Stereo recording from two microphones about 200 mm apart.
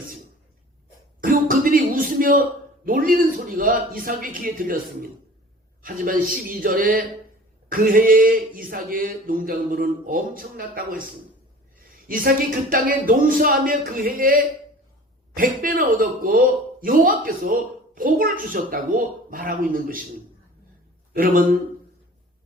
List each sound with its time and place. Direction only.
1.2 s a sound: 45° right (ahead or behind)
2.8 s speech: 45° right (ahead or behind)
5.8 s speech: 45° right (ahead or behind)
12.0 s speech: 45° right (ahead or behind)
21.1 s speech: 45° right (ahead or behind)